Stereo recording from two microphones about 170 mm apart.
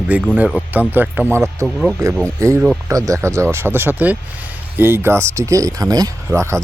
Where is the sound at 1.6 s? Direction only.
Centre (ahead or behind).